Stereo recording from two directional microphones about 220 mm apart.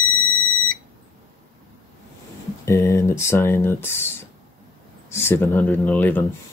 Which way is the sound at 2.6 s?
15° left (ahead or behind).